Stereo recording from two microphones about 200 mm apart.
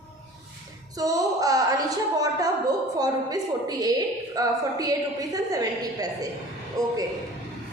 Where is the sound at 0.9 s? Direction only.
15° right (ahead or behind).